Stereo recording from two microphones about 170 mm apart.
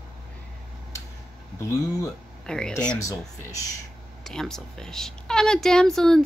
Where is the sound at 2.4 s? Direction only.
5° left (ahead or behind).